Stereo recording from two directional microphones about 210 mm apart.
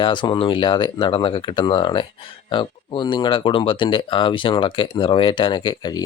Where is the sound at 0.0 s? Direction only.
20° left (ahead or behind).